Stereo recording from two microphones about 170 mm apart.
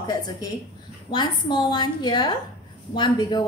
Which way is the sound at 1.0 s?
25° left (ahead or behind).